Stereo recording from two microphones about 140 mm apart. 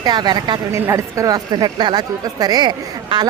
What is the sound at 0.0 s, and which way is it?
Speech, 30° right (ahead or behind).